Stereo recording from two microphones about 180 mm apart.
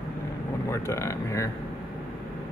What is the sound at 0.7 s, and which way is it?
Speech, 15° left (ahead or behind).